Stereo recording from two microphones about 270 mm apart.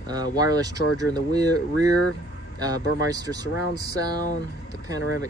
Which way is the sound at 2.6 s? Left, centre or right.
Centre.